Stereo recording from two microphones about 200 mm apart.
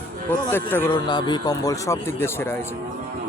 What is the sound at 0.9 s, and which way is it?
Speech, 20° left (ahead or behind).